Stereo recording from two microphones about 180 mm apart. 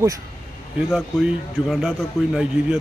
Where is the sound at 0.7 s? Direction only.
Centre (ahead or behind).